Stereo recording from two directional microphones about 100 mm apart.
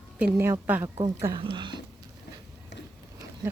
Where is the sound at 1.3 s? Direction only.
50° right (ahead or behind).